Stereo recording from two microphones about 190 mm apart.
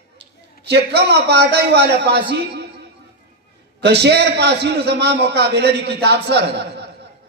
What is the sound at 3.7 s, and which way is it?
A man's voice, 60° right (ahead or behind).